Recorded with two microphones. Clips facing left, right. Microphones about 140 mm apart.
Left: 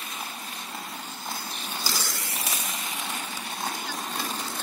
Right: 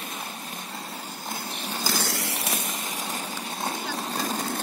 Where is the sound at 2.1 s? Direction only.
70° right (ahead or behind).